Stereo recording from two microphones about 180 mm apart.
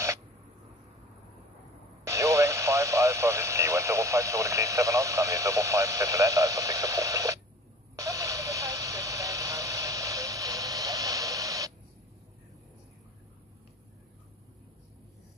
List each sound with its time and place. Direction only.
2.0 s radio: 15° right (ahead or behind)